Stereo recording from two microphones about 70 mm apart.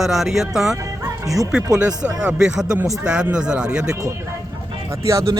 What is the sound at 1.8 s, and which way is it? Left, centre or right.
Speech, centre.